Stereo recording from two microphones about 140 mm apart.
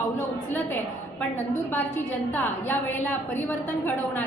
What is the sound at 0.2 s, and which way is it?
Speech, 15° left (ahead or behind).